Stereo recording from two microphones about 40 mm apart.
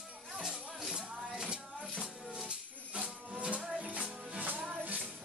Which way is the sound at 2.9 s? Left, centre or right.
Right.